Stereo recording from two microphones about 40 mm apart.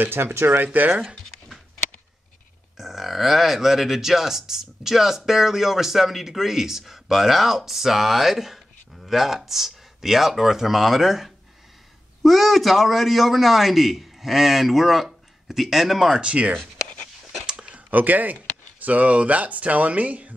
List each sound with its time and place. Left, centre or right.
0.0 s speech: right
0.7 s speech: right
2.8 s a man's voice: centre
16.2 s speech: right
17.5 s a sound: right
17.7 s speech: right